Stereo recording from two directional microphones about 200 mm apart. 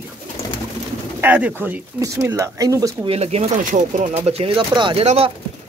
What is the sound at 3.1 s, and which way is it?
Speech, 30° right (ahead or behind).